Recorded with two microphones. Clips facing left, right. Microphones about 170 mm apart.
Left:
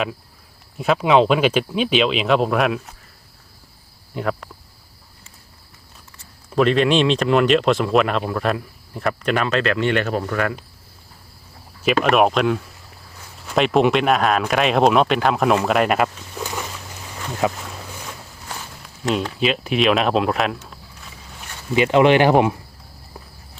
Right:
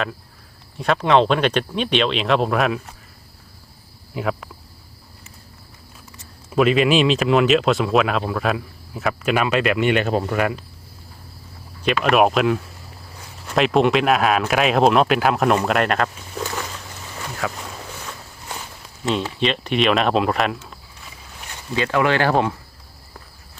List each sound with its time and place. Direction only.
0.8 s speech: 5° left (ahead or behind)
4.1 s speech: 5° right (ahead or behind)
6.5 s speech: 5° right (ahead or behind)
12.0 s speech: centre (ahead or behind)
17.4 s speech: 20° left (ahead or behind)
19.0 s speech: centre (ahead or behind)
21.8 s speech: 20° left (ahead or behind)